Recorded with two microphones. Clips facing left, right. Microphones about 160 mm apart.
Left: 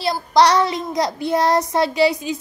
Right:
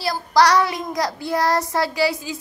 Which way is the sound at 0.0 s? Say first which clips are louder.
Left 2 dB; 20° left (ahead or behind).